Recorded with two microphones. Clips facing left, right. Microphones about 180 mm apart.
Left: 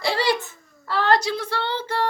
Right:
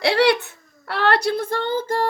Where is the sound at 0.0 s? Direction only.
65° right (ahead or behind).